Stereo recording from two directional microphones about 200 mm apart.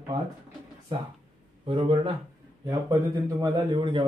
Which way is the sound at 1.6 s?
25° right (ahead or behind).